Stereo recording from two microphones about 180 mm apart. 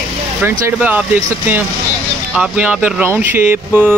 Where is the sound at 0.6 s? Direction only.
10° right (ahead or behind).